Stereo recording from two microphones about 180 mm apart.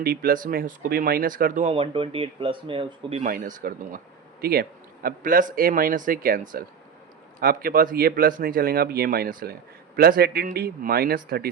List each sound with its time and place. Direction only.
0.0 s speech: 55° right (ahead or behind)
1.6 s speech: 30° right (ahead or behind)
3.2 s speech: 50° right (ahead or behind)